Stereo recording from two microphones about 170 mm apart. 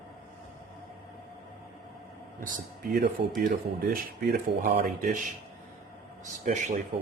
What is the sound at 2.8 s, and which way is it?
Speech, 60° right (ahead or behind).